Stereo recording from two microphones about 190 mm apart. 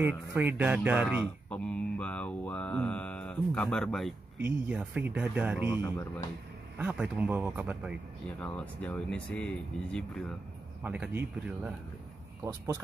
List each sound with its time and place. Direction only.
0.0 s speech: 10° right (ahead or behind)
1.2 s mantra: 5° left (ahead or behind)
4.4 s speech: 10° right (ahead or behind)
5.8 s speech: 15° left (ahead or behind)
6.8 s speech: 5° right (ahead or behind)
8.4 s speech: 5° left (ahead or behind)
10.8 s speech: 10° right (ahead or behind)